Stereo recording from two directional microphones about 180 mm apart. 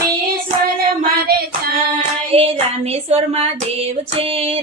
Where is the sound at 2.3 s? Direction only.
35° right (ahead or behind).